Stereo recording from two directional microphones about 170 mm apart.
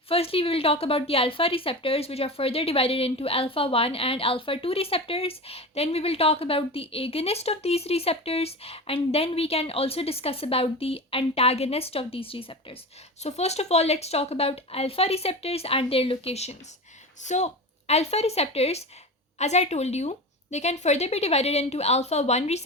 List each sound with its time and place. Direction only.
0.1 s speech: 35° left (ahead or behind)